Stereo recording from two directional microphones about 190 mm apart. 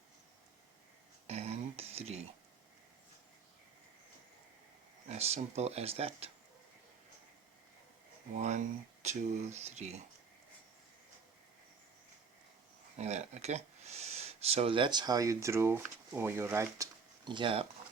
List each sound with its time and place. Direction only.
1.3 s a sound: 35° right (ahead or behind)
5.0 s speech: 35° right (ahead or behind)
8.4 s speech: 35° right (ahead or behind)
13.0 s speech: 35° right (ahead or behind)